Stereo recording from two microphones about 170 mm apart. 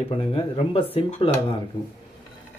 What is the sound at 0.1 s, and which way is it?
Speech, 35° left (ahead or behind).